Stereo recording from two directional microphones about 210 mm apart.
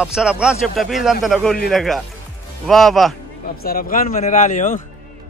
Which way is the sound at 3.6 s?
45° left (ahead or behind).